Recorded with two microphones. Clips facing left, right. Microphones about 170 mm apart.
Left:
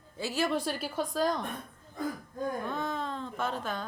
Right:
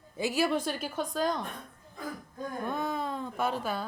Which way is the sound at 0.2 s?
15° right (ahead or behind).